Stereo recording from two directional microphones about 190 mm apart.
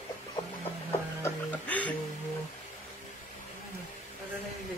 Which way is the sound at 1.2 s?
10° left (ahead or behind).